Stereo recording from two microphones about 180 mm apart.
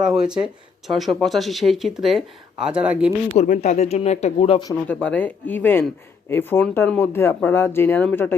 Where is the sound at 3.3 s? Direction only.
40° left (ahead or behind).